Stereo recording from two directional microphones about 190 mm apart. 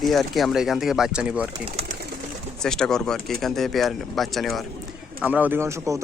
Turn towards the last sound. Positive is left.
turn(degrees=-15)  # may be behind; listen again after turning